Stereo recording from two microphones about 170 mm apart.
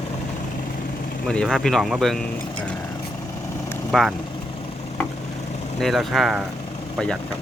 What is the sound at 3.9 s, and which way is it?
Speech, centre (ahead or behind).